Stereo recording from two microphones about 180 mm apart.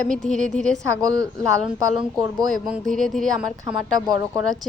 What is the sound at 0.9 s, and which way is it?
Speech, 20° right (ahead or behind).